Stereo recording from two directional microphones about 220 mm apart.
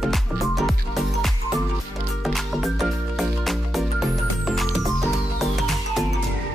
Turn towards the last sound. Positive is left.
turn(degrees=0)  # may be behind; listen again after turning